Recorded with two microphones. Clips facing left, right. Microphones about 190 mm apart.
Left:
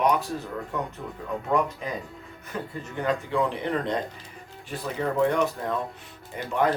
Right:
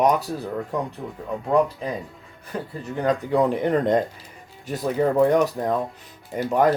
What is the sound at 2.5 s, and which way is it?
Speech, 40° right (ahead or behind).